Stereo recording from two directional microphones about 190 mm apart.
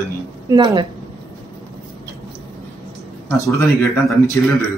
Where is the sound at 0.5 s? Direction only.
25° right (ahead or behind).